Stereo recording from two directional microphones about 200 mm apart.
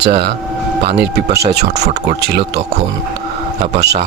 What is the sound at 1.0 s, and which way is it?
Speech, 55° right (ahead or behind).